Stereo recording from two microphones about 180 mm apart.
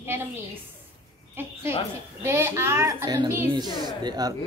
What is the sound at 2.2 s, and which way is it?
A woman's voice, 15° right (ahead or behind).